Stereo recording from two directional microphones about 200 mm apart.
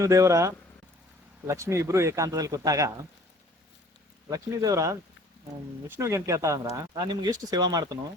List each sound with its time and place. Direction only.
0.0 s speech: 15° right (ahead or behind)
4.3 s speech: 15° right (ahead or behind)
6.0 s speech: 15° right (ahead or behind)